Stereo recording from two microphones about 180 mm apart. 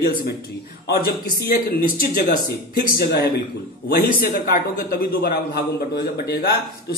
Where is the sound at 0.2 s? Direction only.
60° left (ahead or behind).